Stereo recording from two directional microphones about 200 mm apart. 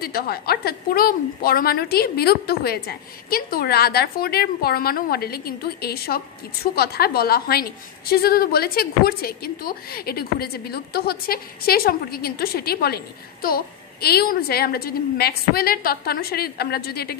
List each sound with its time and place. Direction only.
0.0 s a woman's voice: 50° left (ahead or behind)